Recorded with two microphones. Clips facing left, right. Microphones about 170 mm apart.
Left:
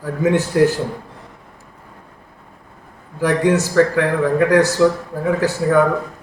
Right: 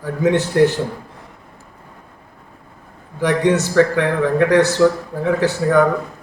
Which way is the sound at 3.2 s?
5° left (ahead or behind).